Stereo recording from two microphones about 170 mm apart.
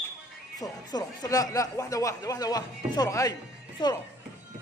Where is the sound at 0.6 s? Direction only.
20° left (ahead or behind).